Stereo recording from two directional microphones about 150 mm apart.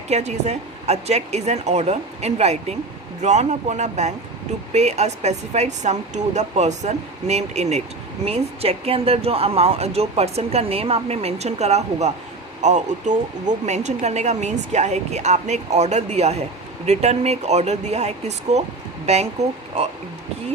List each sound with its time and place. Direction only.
0.1 s speech: 50° right (ahead or behind)